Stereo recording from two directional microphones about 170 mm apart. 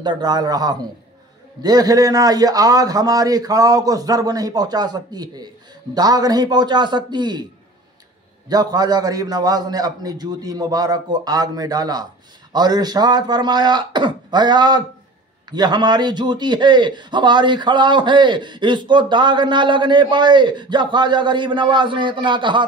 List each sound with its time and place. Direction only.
0.0 s a man's voice: 25° right (ahead or behind)
8.5 s a man's voice: 20° right (ahead or behind)